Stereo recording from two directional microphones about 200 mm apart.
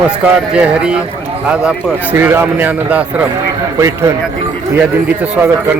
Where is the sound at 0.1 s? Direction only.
5° right (ahead or behind).